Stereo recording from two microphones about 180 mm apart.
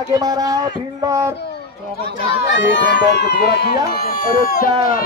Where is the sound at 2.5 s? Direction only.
85° left; by 3.8 s 65° left (ahead or behind).